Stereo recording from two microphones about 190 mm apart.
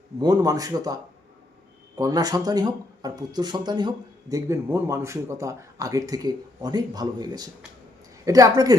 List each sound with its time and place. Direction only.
0.2 s speech: 20° right (ahead or behind)
2.0 s speech: 20° right (ahead or behind)